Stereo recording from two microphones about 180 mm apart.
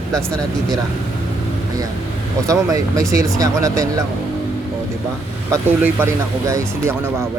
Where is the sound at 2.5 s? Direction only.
20° right (ahead or behind).